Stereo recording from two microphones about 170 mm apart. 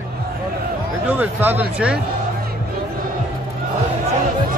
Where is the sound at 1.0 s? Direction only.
10° right (ahead or behind).